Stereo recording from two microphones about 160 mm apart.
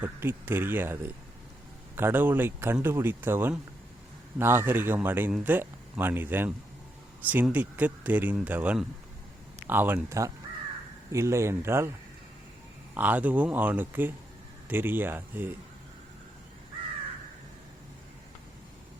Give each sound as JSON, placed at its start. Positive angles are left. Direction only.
{"t": 0.0, "sound": "speech", "side_deg": -15}
{"t": 12.9, "sound": "speech", "side_deg": -10}